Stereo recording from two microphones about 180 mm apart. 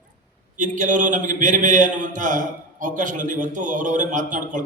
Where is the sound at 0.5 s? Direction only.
45° right (ahead or behind).